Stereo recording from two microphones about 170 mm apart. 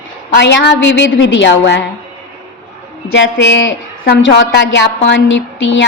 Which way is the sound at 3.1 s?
90° left.